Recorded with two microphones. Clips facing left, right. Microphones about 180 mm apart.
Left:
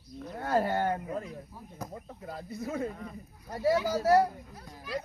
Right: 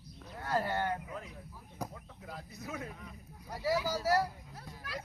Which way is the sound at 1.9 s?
40° left (ahead or behind).